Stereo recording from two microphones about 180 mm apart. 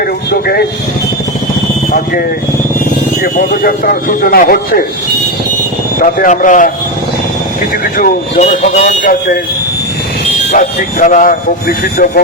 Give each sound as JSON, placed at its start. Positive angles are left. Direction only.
{"t": 0.3, "sound": "a man's voice", "side_deg": 60}
{"t": 3.3, "sound": "a man's voice", "side_deg": 55}
{"t": 6.0, "sound": "speech", "side_deg": 50}
{"t": 7.9, "sound": "speech", "side_deg": 45}
{"t": 10.5, "sound": "speech", "side_deg": 50}